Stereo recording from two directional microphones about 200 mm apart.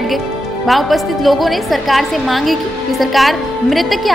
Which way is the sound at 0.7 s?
Centre (ahead or behind).